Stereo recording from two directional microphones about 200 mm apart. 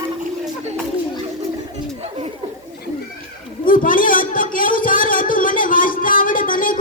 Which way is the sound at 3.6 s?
45° left (ahead or behind).